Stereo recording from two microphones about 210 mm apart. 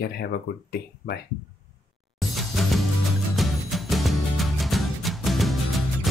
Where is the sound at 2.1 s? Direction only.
Centre (ahead or behind).